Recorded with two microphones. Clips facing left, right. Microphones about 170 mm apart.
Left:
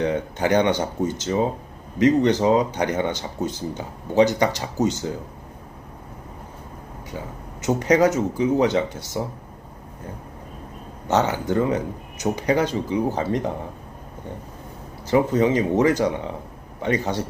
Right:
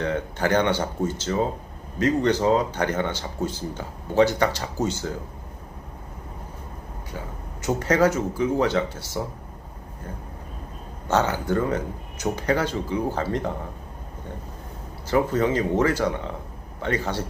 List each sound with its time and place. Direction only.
0.0 s speech: 15° left (ahead or behind)
7.6 s speech: 15° left (ahead or behind)
11.1 s speech: 20° left (ahead or behind)
15.0 s speech: 20° left (ahead or behind)